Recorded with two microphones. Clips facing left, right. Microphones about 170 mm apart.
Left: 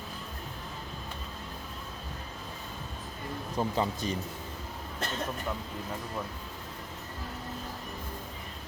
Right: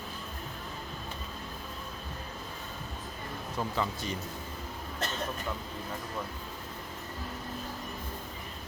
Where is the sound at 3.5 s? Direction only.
25° left (ahead or behind).